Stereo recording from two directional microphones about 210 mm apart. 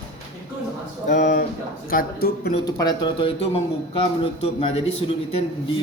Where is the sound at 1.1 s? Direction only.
40° left (ahead or behind).